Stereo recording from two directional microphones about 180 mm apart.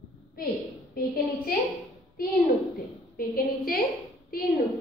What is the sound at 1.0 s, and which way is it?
Speech, 55° left (ahead or behind).